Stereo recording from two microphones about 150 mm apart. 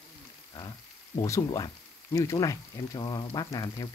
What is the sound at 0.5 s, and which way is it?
Frying, 30° left (ahead or behind).